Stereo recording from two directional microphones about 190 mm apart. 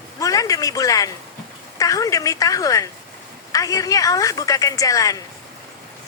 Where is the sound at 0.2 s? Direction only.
20° left (ahead or behind).